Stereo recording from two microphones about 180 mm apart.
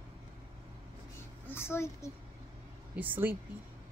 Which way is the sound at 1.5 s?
15° left (ahead or behind).